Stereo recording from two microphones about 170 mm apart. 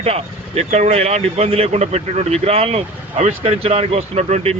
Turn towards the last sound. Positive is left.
turn(degrees=-40)  # may be behind; listen again after turning